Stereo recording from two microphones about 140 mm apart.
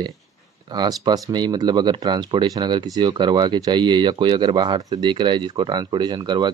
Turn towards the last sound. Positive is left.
turn(degrees=-30)  # may be behind; listen again after turning